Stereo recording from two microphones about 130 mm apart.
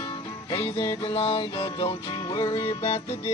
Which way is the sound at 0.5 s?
35° left (ahead or behind).